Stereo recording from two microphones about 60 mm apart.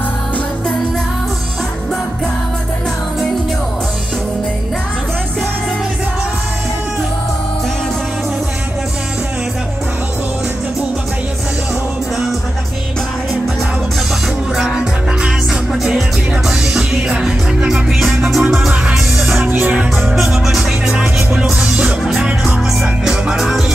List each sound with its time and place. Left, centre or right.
16.4 s music: centre
19.4 s music: right
20.2 s music: centre